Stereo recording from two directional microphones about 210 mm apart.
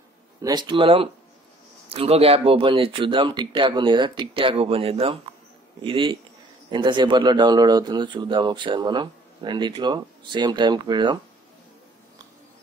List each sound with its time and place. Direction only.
0.4 s a man's voice: 20° right (ahead or behind)